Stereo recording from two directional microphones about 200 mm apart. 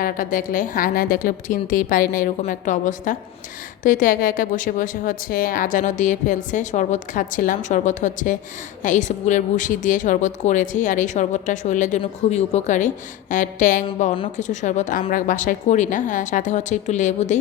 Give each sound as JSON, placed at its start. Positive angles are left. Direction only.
{"t": 0.0, "sound": "a woman's voice", "side_deg": 45}